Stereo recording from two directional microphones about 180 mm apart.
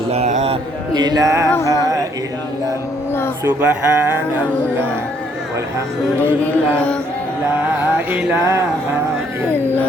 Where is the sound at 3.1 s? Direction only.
15° left (ahead or behind).